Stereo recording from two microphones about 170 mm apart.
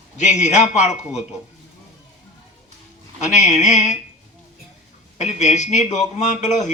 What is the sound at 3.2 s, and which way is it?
Speech, 45° left (ahead or behind).